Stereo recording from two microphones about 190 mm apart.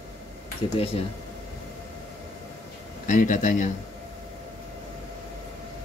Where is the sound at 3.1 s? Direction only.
40° left (ahead or behind).